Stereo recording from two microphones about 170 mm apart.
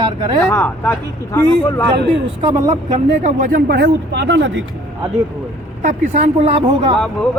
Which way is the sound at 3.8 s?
85° right.